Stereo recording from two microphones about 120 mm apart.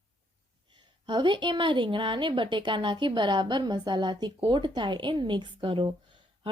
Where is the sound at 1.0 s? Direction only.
40° right (ahead or behind).